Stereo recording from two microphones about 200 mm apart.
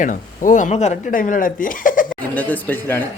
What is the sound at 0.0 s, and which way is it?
Speech, 40° left (ahead or behind).